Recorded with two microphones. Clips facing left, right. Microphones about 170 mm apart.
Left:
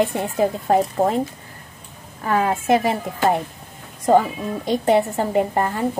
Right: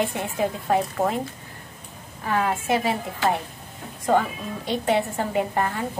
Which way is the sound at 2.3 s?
45° left (ahead or behind).